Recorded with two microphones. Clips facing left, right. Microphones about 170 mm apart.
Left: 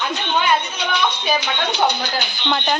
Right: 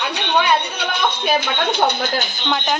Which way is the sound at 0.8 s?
55° right (ahead or behind).